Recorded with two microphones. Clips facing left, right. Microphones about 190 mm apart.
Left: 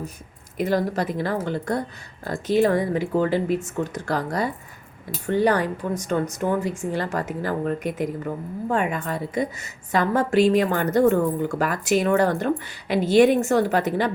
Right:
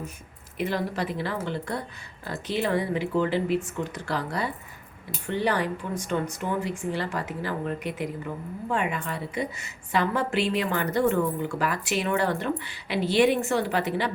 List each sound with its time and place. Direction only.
0.5 s a woman's voice: 40° left (ahead or behind)